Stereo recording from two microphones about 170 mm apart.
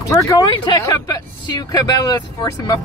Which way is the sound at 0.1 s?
20° left (ahead or behind).